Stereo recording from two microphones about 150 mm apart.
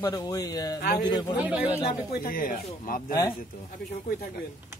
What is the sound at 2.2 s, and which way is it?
Speech, 70° left (ahead or behind).